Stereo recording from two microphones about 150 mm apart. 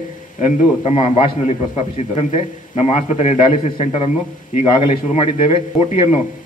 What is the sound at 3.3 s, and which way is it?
A man's voice, 35° left (ahead or behind).